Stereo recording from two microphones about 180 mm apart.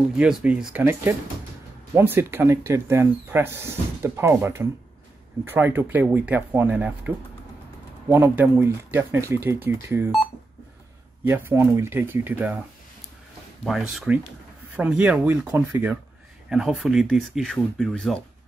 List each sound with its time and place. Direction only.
0.1 s speech: 5° right (ahead or behind)
11.2 s speech: 10° right (ahead or behind)
13.7 s speech: centre (ahead or behind)